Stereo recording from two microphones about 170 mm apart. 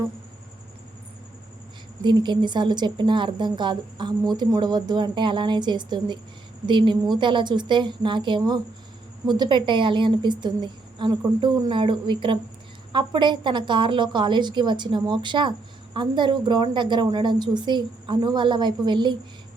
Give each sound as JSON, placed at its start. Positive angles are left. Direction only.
{"t": 2.0, "sound": "a woman's voice", "side_deg": -25}